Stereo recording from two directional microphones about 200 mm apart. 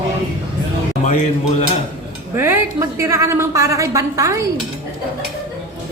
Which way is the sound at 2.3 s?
10° right (ahead or behind).